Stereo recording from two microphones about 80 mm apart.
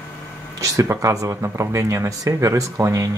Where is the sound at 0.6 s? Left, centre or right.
Right.